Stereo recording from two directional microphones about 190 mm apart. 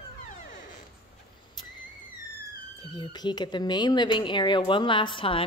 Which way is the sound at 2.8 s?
25° left (ahead or behind).